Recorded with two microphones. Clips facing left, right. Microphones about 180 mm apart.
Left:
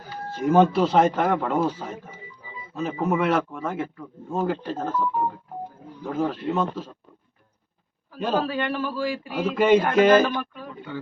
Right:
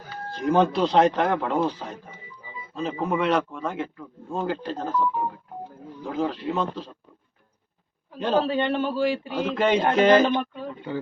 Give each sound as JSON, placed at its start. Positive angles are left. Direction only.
{"t": 0.3, "sound": "a man's voice", "side_deg": 5}
{"t": 6.1, "sound": "speech", "side_deg": 5}
{"t": 8.4, "sound": "a man's voice", "side_deg": -25}
{"t": 9.3, "sound": "a man's voice", "side_deg": 5}
{"t": 10.2, "sound": "a man's voice", "side_deg": -25}